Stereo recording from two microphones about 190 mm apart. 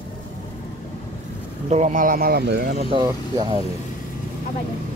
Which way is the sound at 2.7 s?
30° right (ahead or behind).